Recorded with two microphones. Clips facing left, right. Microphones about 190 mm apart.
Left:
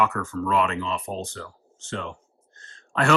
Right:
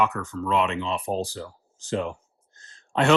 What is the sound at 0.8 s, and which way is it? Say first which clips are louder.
Speech: right 3 dB; 30° right (ahead or behind).